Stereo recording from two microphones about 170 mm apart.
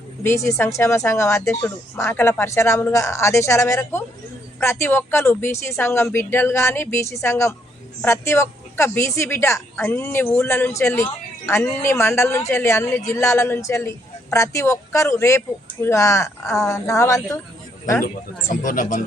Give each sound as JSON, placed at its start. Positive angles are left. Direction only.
{"t": 0.2, "sound": "speech", "side_deg": 15}
{"t": 18.0, "sound": "speech", "side_deg": 50}